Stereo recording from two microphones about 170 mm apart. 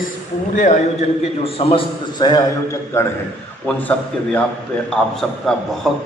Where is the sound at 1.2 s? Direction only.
35° left (ahead or behind).